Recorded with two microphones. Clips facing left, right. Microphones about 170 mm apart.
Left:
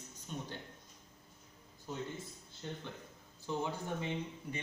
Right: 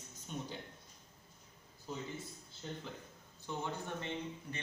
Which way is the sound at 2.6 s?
Centre (ahead or behind).